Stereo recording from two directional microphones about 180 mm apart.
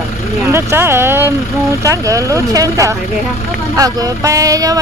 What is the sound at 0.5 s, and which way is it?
Speech, 15° right (ahead or behind).